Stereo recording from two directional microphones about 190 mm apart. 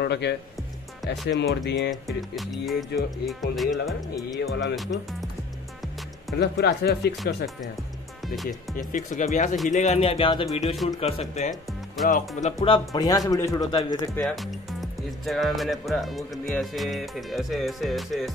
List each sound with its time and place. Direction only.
0.0 s speech: 60° left (ahead or behind)
2.0 s speech: centre (ahead or behind)
6.3 s speech: 60° left (ahead or behind)
8.5 s speech: 40° left (ahead or behind); by 14.2 s 15° left (ahead or behind)
14.2 s speech: centre (ahead or behind)